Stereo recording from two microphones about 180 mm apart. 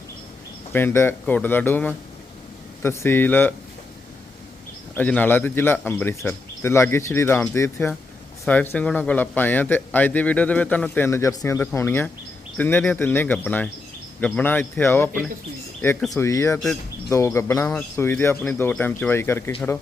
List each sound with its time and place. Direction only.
0.7 s a man's voice: 10° left (ahead or behind)
4.9 s a man's voice: 10° left (ahead or behind)